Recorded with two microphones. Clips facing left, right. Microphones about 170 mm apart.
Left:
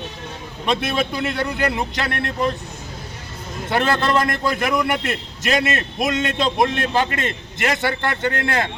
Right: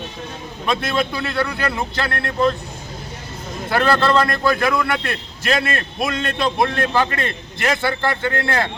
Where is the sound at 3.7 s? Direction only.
20° left (ahead or behind).